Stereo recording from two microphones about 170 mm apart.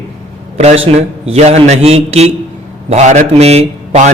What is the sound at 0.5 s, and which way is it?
Speech, 35° right (ahead or behind).